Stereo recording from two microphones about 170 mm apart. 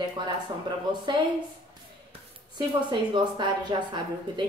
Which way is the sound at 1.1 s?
25° right (ahead or behind).